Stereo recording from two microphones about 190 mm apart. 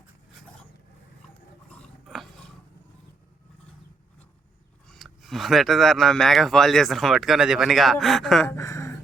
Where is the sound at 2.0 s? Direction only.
Centre (ahead or behind).